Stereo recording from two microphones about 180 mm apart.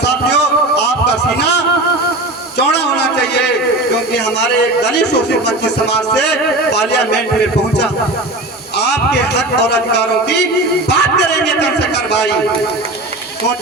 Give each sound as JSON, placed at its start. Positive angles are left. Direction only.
{"t": 0.0, "sound": "music", "side_deg": 70}
{"t": 2.6, "sound": "a sound", "side_deg": 70}
{"t": 4.1, "sound": "a man's voice", "side_deg": 70}
{"t": 8.8, "sound": "a man's voice", "side_deg": 70}